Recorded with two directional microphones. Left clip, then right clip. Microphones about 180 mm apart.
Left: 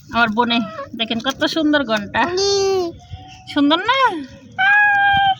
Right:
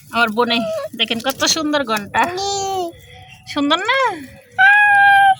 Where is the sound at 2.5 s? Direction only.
30° right (ahead or behind).